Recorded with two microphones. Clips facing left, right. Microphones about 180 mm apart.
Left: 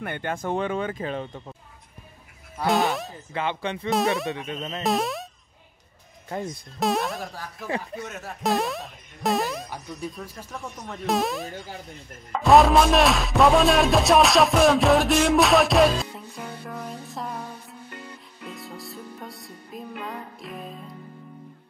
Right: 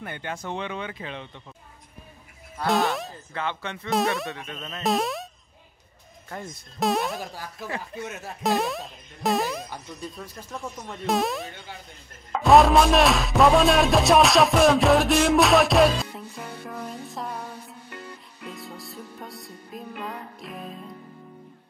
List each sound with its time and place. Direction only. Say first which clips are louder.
0.0 s speech: left 5 dB; 55° left (ahead or behind)
2.6 s speech: left 1 dB; centre (ahead or behind)
3.3 s speech: left 4 dB; 15° left (ahead or behind)
3.9 s music: left 1 dB; centre (ahead or behind)
4.3 s music: left 5 dB; 20° left (ahead or behind)
4.8 s speech: even; centre (ahead or behind)
6.8 s music: even; centre (ahead or behind)
8.4 s music: even; centre (ahead or behind)
18.4 s music: left 1 dB; centre (ahead or behind)